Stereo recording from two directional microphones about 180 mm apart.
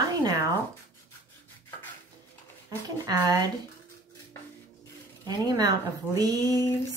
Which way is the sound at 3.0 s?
20° right (ahead or behind).